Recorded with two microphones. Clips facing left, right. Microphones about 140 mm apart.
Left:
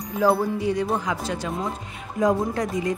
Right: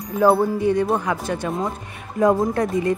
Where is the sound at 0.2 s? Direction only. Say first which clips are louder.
Right 4 dB; 55° right (ahead or behind).